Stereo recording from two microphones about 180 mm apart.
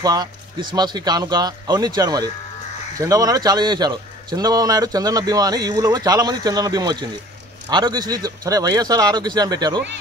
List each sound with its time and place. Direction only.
0.0 s a man's voice: 20° right (ahead or behind)